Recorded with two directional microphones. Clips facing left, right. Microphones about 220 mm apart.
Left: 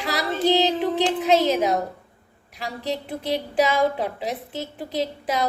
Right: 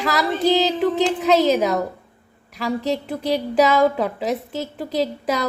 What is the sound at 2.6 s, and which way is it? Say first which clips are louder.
A woman's voice: right 6 dB; 40° right (ahead or behind).